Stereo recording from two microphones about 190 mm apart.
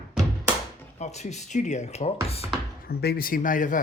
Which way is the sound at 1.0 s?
35° left (ahead or behind).